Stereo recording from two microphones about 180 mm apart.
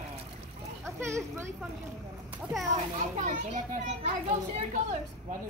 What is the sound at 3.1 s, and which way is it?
A child's voice, 40° right (ahead or behind).